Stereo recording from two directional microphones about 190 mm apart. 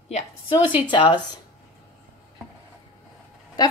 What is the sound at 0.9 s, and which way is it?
Speech, 25° left (ahead or behind).